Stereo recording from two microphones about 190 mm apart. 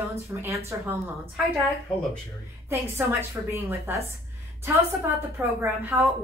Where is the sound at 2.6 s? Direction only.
10° right (ahead or behind).